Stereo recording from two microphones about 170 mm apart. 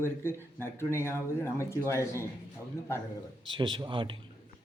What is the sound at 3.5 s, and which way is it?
Speech, 25° right (ahead or behind).